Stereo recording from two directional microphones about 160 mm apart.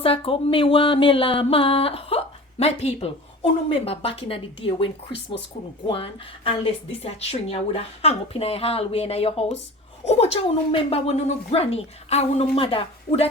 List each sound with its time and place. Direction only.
0.0 s speech: 35° left (ahead or behind)
5.9 s speech: 35° left (ahead or behind)